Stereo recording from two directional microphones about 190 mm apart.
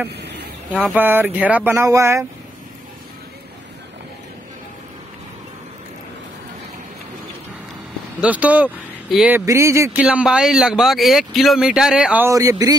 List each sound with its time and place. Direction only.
0.1 s a sound: 60° right (ahead or behind)
0.9 s speech: 10° right (ahead or behind)
8.2 s speech: 5° right (ahead or behind)
9.5 s speech: 15° right (ahead or behind)
10.0 s speech: 5° right (ahead or behind)